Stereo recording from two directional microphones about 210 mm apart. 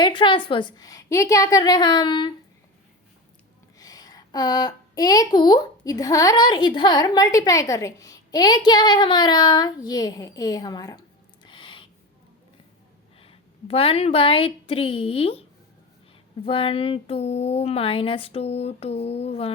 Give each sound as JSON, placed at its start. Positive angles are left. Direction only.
{"t": 0.0, "sound": "speech", "side_deg": 25}
{"t": 3.8, "sound": "a woman's voice", "side_deg": 15}
{"t": 11.4, "sound": "a sound", "side_deg": 25}
{"t": 13.1, "sound": "a woman's voice", "side_deg": 25}
{"t": 16.5, "sound": "speech", "side_deg": 25}